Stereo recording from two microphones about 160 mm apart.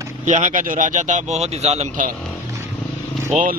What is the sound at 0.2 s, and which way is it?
Speech, 50° right (ahead or behind).